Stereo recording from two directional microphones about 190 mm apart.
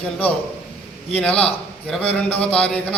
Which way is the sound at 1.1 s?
5° left (ahead or behind).